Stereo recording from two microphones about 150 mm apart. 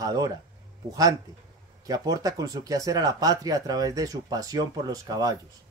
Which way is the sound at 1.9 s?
25° right (ahead or behind).